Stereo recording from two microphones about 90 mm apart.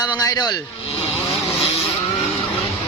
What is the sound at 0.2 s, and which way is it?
Speech, 40° left (ahead or behind).